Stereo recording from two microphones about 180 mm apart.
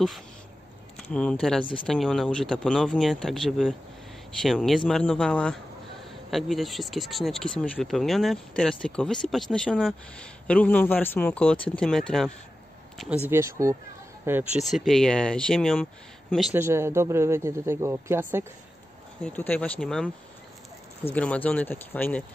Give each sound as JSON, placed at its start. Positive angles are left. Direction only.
{"t": 0.9, "sound": "a man's voice", "side_deg": 5}
{"t": 13.3, "sound": "speech", "side_deg": -15}
{"t": 14.7, "sound": "speech", "side_deg": 0}
{"t": 16.5, "sound": "speech", "side_deg": -15}
{"t": 19.2, "sound": "a man's voice", "side_deg": 10}
{"t": 21.1, "sound": "a man's voice", "side_deg": 5}